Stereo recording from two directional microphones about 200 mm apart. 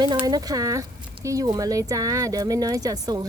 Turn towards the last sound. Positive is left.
turn(degrees=-20)  # may be behind; listen again after turning